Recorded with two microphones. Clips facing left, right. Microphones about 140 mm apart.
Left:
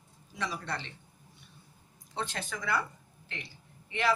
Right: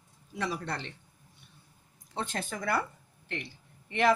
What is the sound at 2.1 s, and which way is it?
A woman's voice, 45° right (ahead or behind).